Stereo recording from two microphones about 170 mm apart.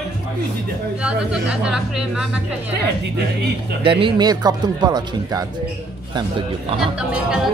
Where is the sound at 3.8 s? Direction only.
30° right (ahead or behind).